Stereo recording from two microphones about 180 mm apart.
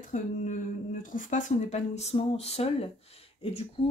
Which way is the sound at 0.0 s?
45° left (ahead or behind).